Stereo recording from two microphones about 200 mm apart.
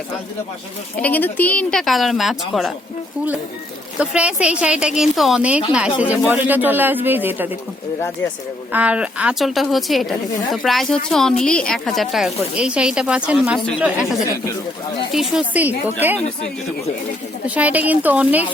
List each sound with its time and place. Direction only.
0.9 s a woman's voice: 10° left (ahead or behind)
3.9 s a woman's voice: 5° right (ahead or behind)
8.7 s a woman's voice: 5° right (ahead or behind)
15.1 s speech: centre (ahead or behind)
17.4 s speech: 5° right (ahead or behind)